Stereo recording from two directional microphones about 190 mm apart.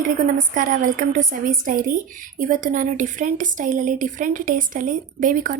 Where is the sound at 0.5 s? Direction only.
45° right (ahead or behind).